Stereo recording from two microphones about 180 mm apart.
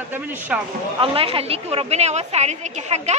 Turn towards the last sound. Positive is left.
turn(degrees=-40)  # may be behind; listen again after turning